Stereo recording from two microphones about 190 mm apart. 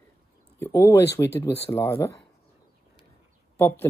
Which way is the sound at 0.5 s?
15° left (ahead or behind).